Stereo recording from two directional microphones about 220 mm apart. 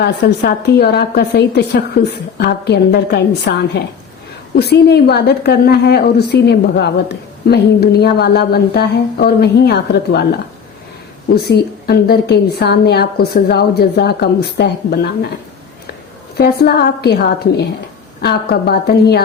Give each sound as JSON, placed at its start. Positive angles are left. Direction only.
{"t": 0.0, "sound": "a woman's voice", "side_deg": 50}
{"t": 11.3, "sound": "a woman's voice", "side_deg": 45}
{"t": 16.4, "sound": "a woman's voice", "side_deg": 45}